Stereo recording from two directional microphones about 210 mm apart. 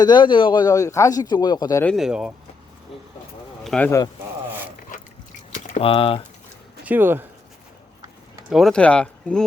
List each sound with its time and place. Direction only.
0.0 s speech: 20° left (ahead or behind)
1.8 s speech: centre (ahead or behind)
3.6 s speech: 5° left (ahead or behind)
5.5 s speech: 35° left (ahead or behind)
6.8 s speech: 10° right (ahead or behind)
8.4 s speech: centre (ahead or behind)